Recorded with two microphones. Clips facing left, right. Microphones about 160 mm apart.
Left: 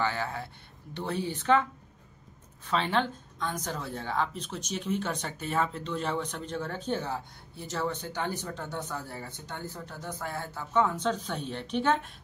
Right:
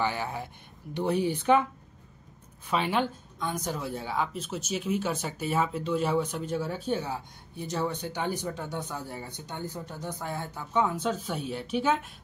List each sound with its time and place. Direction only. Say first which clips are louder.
0.0 s a woman's voice: right 1 dB; 15° right (ahead or behind)